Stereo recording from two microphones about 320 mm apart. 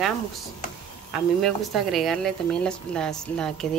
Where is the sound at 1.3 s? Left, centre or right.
Centre.